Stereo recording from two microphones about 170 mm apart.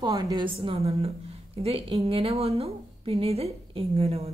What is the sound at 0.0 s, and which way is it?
A woman's voice, 25° right (ahead or behind).